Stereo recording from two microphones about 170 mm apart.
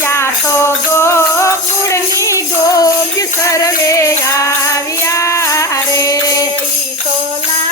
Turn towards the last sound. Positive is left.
turn(degrees=20)  # may be behind; listen again after turning